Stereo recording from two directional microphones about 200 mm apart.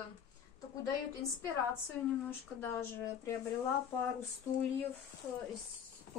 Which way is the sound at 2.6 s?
10° left (ahead or behind).